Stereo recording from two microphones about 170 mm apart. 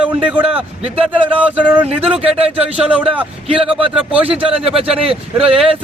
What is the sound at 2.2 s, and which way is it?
Speech, 35° right (ahead or behind).